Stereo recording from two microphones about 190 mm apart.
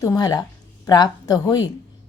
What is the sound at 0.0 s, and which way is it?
A woman's voice, 20° left (ahead or behind).